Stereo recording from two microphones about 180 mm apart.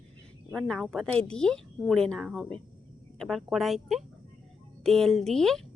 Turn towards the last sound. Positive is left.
turn(degrees=0)  # may be behind; listen again after turning